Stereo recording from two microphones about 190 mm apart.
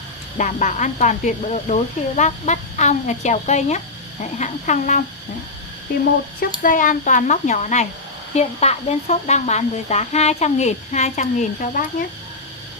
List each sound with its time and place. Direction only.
0.4 s speech: 40° left (ahead or behind)
6.6 s speech: 45° left (ahead or behind)